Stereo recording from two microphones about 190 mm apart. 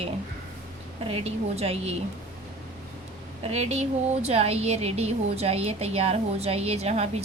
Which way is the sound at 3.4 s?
35° right (ahead or behind).